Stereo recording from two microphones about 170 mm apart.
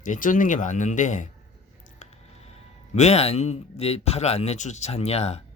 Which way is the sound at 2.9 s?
40° left (ahead or behind).